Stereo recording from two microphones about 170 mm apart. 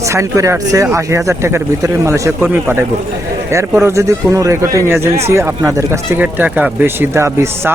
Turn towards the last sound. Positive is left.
turn(degrees=-15)  # may be behind; listen again after turning